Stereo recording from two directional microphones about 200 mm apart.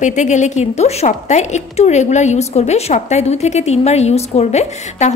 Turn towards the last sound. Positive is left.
turn(degrees=35)  # may be behind; listen again after turning